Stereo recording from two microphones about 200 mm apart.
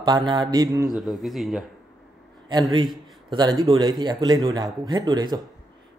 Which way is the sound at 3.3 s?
20° right (ahead or behind).